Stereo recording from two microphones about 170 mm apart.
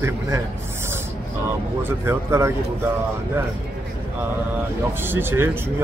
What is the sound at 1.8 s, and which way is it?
Speech, 15° right (ahead or behind).